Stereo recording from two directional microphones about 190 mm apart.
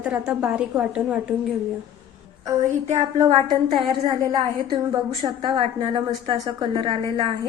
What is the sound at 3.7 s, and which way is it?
A woman's voice, 25° right (ahead or behind).